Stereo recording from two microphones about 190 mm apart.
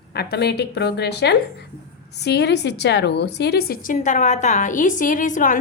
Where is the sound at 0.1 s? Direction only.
60° left (ahead or behind).